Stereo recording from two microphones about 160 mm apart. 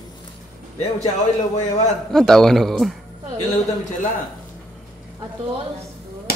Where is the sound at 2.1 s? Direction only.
5° left (ahead or behind).